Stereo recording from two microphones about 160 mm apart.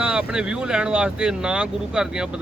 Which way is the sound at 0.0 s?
5° right (ahead or behind).